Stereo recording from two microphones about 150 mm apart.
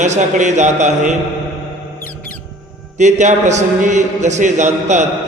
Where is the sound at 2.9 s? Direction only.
55° right (ahead or behind).